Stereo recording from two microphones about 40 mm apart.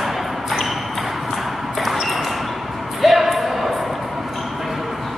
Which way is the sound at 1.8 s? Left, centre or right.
Centre.